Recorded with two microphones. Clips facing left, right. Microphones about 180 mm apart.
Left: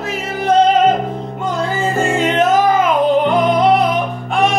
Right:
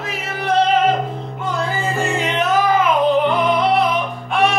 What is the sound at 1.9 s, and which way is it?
Music, 45° left (ahead or behind).